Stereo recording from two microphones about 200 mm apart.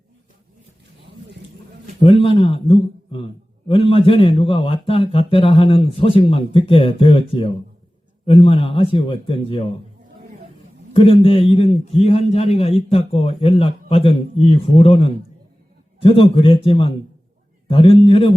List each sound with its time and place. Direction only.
2.0 s a man's voice: 25° left (ahead or behind)
10.9 s a man's voice: 25° left (ahead or behind)